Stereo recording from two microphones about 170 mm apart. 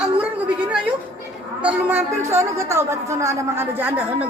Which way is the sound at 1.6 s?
10° right (ahead or behind).